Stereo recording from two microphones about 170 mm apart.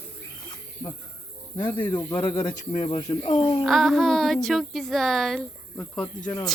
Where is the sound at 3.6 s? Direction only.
Centre (ahead or behind).